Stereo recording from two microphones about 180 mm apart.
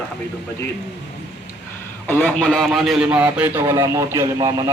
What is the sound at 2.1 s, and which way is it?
A man's voice, 10° left (ahead or behind).